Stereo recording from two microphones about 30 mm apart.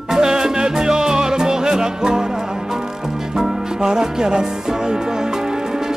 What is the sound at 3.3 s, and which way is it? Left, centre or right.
Music, right.